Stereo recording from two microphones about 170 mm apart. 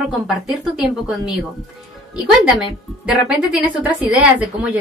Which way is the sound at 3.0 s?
5° right (ahead or behind).